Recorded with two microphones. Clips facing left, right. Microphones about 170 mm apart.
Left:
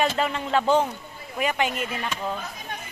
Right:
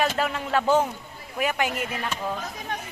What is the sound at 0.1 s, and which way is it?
Speech, 5° right (ahead or behind).